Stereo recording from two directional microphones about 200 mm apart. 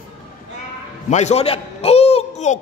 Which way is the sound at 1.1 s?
35° left (ahead or behind).